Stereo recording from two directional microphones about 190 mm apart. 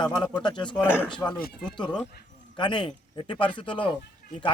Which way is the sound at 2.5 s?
25° left (ahead or behind).